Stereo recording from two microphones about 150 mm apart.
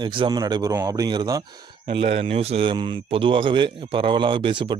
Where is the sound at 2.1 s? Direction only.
40° right (ahead or behind).